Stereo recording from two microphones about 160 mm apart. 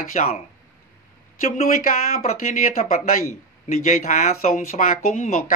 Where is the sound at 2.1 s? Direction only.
50° left (ahead or behind).